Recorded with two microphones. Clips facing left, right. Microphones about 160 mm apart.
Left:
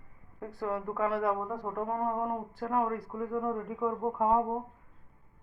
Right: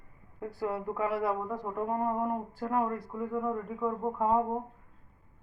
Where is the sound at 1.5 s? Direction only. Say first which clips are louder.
Right 1 dB; centre (ahead or behind).